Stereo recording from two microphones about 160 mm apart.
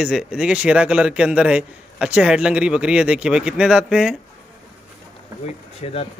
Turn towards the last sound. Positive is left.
turn(degrees=40)  # may be behind; listen again after turning